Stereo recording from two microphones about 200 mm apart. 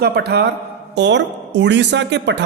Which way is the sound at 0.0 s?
55° right (ahead or behind).